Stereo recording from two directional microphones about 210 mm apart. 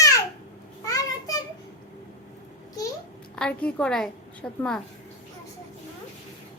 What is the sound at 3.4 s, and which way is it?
A woman's voice, 5° left (ahead or behind).